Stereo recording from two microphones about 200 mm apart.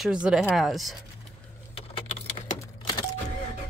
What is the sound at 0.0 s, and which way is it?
Speech, 5° right (ahead or behind).